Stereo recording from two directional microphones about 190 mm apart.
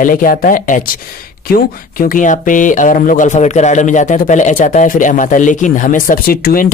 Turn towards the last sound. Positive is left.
turn(degrees=50)  # may be behind; listen again after turning